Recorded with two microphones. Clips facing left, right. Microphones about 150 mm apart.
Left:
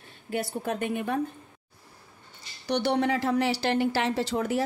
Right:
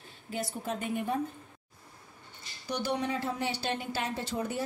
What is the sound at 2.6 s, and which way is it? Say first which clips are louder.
A woman's voice: left 7 dB; 70° left (ahead or behind).